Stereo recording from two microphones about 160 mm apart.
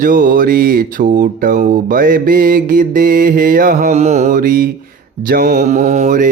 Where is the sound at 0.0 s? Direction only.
60° right (ahead or behind).